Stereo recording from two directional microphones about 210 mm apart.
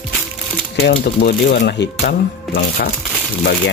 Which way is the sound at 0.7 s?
50° left (ahead or behind).